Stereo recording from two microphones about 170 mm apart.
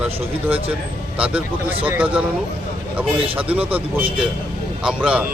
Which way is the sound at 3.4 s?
10° right (ahead or behind).